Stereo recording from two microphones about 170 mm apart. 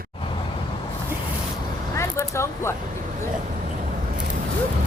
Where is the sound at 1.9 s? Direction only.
15° left (ahead or behind).